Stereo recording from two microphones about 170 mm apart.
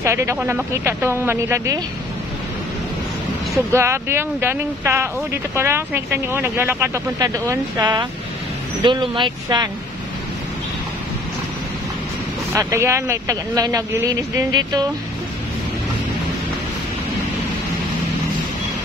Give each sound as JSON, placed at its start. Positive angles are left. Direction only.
{"t": 0.0, "sound": "speech", "side_deg": -15}
{"t": 3.7, "sound": "speech", "side_deg": -15}
{"t": 12.5, "sound": "speech", "side_deg": -15}